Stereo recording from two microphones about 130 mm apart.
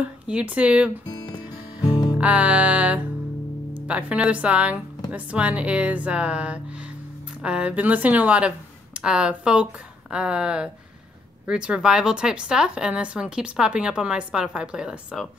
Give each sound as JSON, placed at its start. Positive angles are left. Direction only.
{"t": 0.3, "sound": "a woman's voice", "side_deg": -10}
{"t": 1.1, "sound": "music", "side_deg": 35}
{"t": 2.1, "sound": "a woman's voice", "side_deg": -10}